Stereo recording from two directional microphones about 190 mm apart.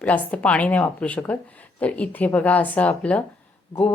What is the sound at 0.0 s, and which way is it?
Speech, 5° left (ahead or behind).